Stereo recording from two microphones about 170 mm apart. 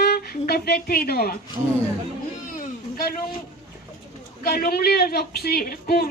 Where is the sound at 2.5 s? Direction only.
60° left (ahead or behind).